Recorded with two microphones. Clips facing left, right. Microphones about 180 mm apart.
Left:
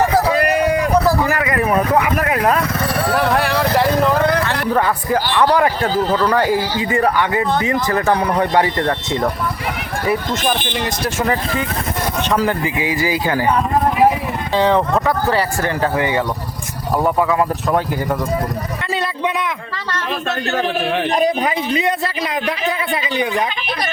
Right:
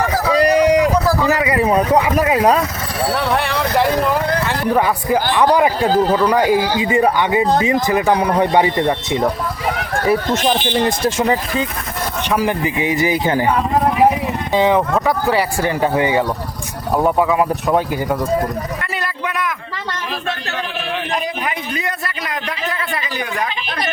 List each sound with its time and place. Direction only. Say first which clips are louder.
1.3 s speech: right 2 dB; 20° right (ahead or behind)
3.2 s speech: left 3 dB; centre (ahead or behind)
4.7 s a man's voice: right 2 dB; 15° right (ahead or behind)
14.5 s speech: even; 15° right (ahead or behind)
21.7 s a man's voice: left 6 dB; 20° left (ahead or behind)